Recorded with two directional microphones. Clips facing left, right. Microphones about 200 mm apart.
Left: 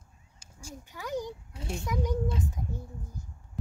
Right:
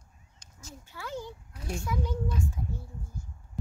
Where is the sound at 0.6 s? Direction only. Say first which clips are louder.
Left 2 dB; 15° left (ahead or behind).